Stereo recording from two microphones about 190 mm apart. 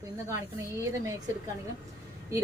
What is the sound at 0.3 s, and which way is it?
Speech, 15° right (ahead or behind).